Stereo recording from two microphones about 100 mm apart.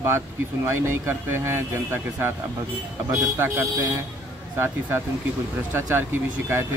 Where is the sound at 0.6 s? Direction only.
25° right (ahead or behind).